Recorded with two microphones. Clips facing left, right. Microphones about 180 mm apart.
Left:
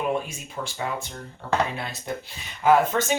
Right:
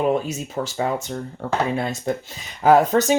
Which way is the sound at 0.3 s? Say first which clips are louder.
Right 8 dB; 40° right (ahead or behind).